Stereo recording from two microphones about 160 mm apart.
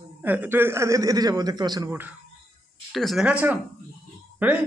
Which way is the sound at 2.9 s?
Centre (ahead or behind).